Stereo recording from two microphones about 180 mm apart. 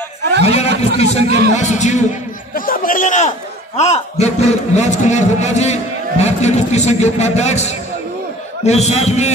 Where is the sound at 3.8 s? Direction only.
40° left (ahead or behind).